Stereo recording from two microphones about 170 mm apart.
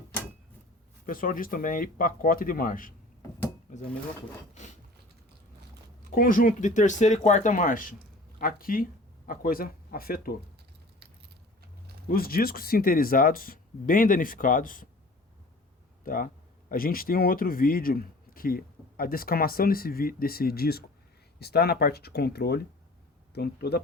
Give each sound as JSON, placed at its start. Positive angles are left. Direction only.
{"t": 1.0, "sound": "speech", "side_deg": 55}
{"t": 6.1, "sound": "speech", "side_deg": 55}
{"t": 12.0, "sound": "speech", "side_deg": 60}
{"t": 16.0, "sound": "speech", "side_deg": 55}